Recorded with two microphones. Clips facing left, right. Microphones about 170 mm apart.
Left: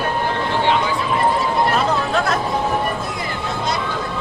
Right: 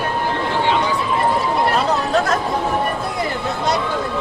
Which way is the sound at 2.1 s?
40° right (ahead or behind).